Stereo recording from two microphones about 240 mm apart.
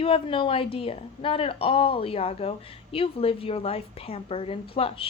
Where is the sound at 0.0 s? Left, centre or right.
Left.